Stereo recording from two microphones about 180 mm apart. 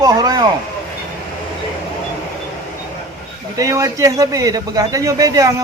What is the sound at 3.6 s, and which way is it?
A man's voice, 15° right (ahead or behind).